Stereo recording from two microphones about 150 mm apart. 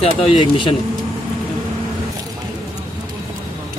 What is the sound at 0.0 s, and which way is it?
Speech, 35° left (ahead or behind).